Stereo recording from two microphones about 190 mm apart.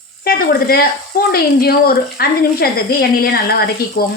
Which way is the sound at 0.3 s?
50° left (ahead or behind).